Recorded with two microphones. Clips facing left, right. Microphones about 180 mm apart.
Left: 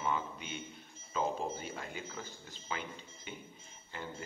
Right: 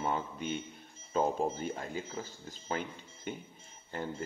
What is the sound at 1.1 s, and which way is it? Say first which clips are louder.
A man's voice: right 5 dB; 45° right (ahead or behind).